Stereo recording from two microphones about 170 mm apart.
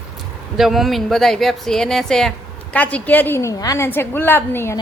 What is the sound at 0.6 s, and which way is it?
Speech, centre (ahead or behind).